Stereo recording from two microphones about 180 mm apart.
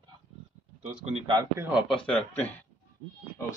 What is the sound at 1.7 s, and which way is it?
Speech, centre (ahead or behind).